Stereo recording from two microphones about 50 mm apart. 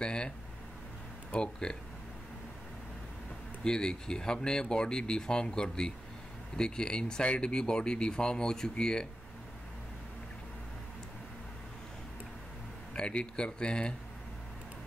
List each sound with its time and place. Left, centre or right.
0.0 s speech: centre
1.3 s speech: centre
3.6 s speech: centre
12.9 s speech: centre